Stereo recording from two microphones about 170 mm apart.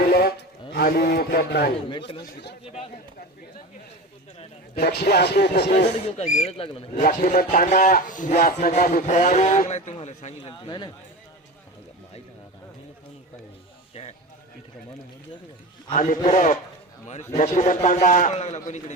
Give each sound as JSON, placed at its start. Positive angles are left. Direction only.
{"t": 0.1, "sound": "a sound", "side_deg": 65}
{"t": 0.7, "sound": "a man's voice", "side_deg": 70}
{"t": 1.9, "sound": "speech", "side_deg": 30}
{"t": 4.7, "sound": "a man's voice", "side_deg": 70}
{"t": 5.9, "sound": "speech", "side_deg": 40}
{"t": 7.0, "sound": "speech", "side_deg": 55}
{"t": 10.5, "sound": "speech", "side_deg": 25}
{"t": 13.9, "sound": "music", "side_deg": 35}
{"t": 15.9, "sound": "speech", "side_deg": 50}